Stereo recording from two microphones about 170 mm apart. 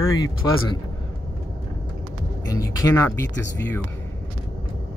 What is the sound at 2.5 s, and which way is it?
Speech, 20° left (ahead or behind).